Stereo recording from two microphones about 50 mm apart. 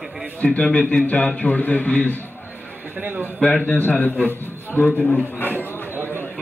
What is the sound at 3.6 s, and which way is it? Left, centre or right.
Speech, left.